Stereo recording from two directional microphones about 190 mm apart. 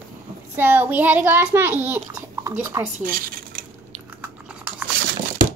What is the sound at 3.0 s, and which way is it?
Dishes, 50° right (ahead or behind).